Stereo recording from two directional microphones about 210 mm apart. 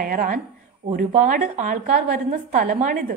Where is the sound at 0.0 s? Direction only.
40° right (ahead or behind).